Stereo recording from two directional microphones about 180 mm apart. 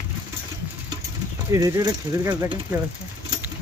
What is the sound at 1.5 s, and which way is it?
Speech, 20° right (ahead or behind).